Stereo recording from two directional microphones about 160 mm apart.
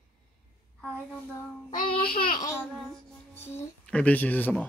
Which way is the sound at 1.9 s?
65° left (ahead or behind).